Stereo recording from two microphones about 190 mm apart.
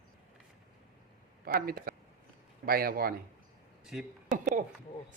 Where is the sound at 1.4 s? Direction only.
50° right (ahead or behind).